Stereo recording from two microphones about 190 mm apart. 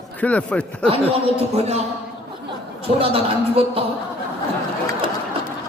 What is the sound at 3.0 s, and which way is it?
Speech, 30° right (ahead or behind).